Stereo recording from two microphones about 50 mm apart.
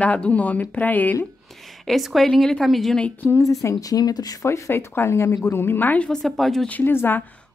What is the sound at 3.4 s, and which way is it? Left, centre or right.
Speech, left.